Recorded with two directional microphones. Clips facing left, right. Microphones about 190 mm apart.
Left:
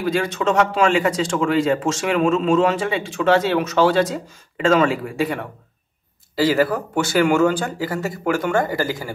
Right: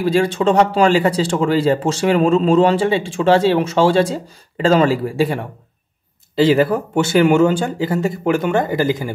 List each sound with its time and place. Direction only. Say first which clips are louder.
0.0 s speech: right 5 dB; 30° right (ahead or behind)